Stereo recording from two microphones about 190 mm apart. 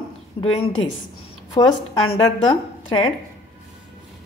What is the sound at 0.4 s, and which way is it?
A woman's voice, 30° left (ahead or behind).